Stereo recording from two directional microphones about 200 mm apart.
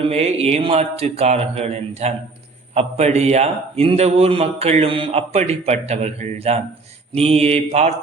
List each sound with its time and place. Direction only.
0.0 s a man's voice: 30° right (ahead or behind)